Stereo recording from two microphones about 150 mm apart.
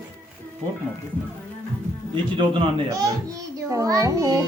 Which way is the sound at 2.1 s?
35° right (ahead or behind).